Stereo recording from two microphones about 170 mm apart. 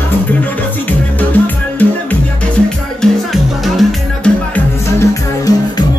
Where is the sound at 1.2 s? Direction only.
10° left (ahead or behind).